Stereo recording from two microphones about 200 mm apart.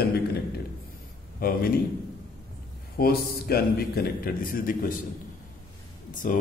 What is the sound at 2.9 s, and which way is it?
A man's voice, 50° left (ahead or behind).